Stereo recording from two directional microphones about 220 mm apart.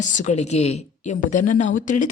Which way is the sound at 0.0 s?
35° left (ahead or behind).